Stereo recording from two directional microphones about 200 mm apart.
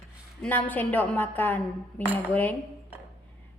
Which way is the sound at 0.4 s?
10° left (ahead or behind).